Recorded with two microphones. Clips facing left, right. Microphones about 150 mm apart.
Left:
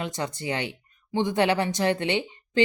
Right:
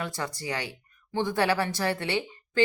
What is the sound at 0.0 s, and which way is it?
Speech, 20° left (ahead or behind).